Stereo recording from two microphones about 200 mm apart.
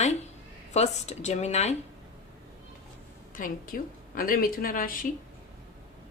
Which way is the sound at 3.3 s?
45° left (ahead or behind).